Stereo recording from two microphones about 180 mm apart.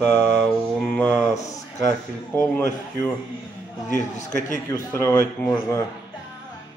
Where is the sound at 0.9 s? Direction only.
10° left (ahead or behind).